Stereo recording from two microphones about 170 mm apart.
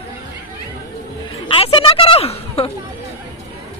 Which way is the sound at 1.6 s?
30° left (ahead or behind).